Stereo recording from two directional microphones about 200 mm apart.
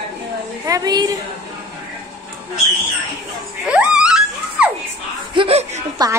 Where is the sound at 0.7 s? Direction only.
20° right (ahead or behind).